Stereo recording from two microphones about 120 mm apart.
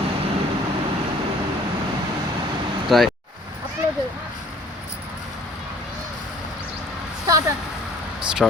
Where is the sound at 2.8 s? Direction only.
Centre (ahead or behind).